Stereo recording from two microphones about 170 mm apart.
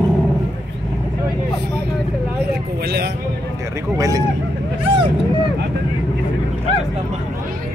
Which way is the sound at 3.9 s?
20° right (ahead or behind).